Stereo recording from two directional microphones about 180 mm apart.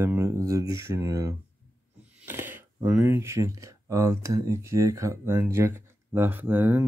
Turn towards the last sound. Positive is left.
turn(degrees=-10)  # may be behind; listen again after turning